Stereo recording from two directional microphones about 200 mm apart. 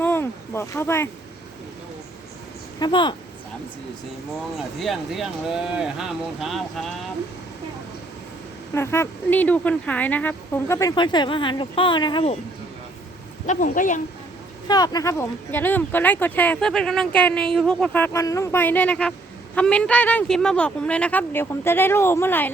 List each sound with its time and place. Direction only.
0.0 s boat: 10° left (ahead or behind)
2.7 s speech: 20° left (ahead or behind)
4.5 s speech: centre (ahead or behind)
8.7 s speech: 15° left (ahead or behind)
13.5 s a woman's voice: 40° left (ahead or behind)
14.7 s speech: 20° left (ahead or behind)